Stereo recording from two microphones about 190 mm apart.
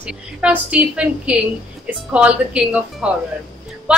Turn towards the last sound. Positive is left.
turn(degrees=-5)  # may be behind; listen again after turning